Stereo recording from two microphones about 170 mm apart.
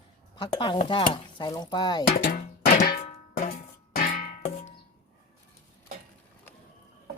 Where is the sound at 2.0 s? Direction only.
55° left (ahead or behind).